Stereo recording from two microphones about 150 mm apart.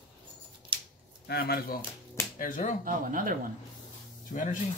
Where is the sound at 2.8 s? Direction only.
65° right (ahead or behind).